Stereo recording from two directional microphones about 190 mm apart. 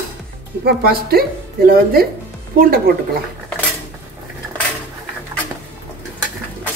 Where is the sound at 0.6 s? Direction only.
55° right (ahead or behind).